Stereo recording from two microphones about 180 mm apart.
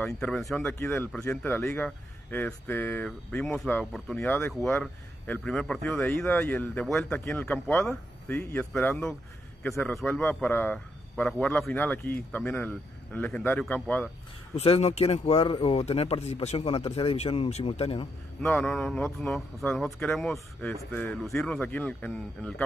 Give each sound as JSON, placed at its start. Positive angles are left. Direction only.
{"t": 0.0, "sound": "speech", "side_deg": 0}
{"t": 14.5, "sound": "speech", "side_deg": 35}
{"t": 18.4, "sound": "speech", "side_deg": 5}